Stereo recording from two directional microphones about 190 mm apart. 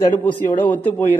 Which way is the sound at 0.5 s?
10° left (ahead or behind).